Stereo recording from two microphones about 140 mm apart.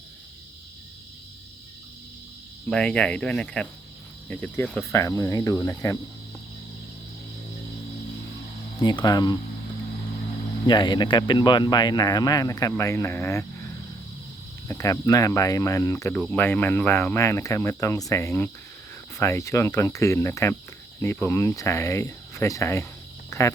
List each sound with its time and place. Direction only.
2.6 s speech: 5° left (ahead or behind)
4.9 s speech: 20° left (ahead or behind)
8.8 s speech: 30° left (ahead or behind)
10.7 s speech: 35° left (ahead or behind); by 13.4 s 20° left (ahead or behind)
14.7 s speech: 25° left (ahead or behind)
23.3 s frog: 20° left (ahead or behind)